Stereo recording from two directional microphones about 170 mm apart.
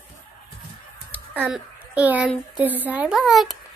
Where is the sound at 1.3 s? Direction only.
10° right (ahead or behind).